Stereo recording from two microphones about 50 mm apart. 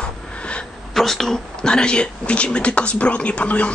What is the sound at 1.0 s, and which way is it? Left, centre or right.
Speech, centre.